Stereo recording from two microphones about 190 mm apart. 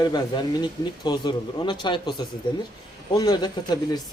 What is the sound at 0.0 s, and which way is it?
A man's voice, 20° left (ahead or behind).